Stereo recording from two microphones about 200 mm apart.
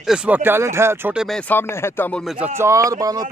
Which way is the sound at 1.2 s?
5° left (ahead or behind).